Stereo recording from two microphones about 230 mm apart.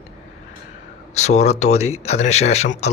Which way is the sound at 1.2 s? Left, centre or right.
Left.